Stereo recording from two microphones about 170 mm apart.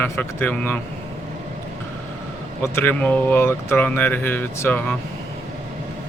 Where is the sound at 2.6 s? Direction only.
10° left (ahead or behind).